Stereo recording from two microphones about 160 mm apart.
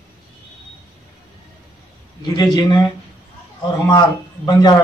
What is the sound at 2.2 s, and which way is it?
Speech, 30° left (ahead or behind).